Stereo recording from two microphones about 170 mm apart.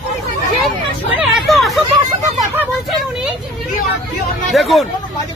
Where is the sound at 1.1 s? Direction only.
Centre (ahead or behind).